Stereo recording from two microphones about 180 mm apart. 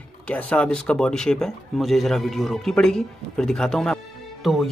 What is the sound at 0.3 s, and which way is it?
Speech, 5° left (ahead or behind).